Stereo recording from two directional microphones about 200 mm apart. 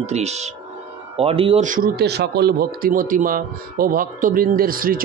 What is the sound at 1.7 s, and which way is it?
Speech, 50° right (ahead or behind).